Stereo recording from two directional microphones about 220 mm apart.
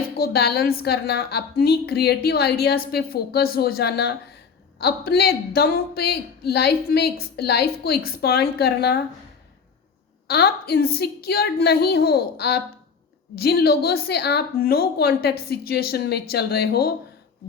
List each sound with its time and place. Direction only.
0.2 s speech: 45° left (ahead or behind)
10.2 s speech: 45° left (ahead or behind)